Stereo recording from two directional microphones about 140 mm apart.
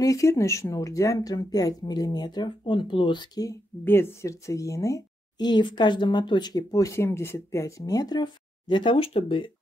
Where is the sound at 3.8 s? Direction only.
15° left (ahead or behind).